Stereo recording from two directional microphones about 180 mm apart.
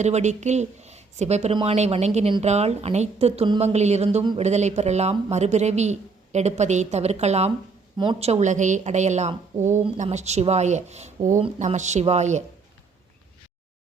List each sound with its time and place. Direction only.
0.0 s speech: 40° right (ahead or behind)